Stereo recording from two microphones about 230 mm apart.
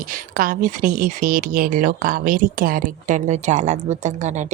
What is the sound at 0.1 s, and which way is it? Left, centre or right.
A woman's voice, right.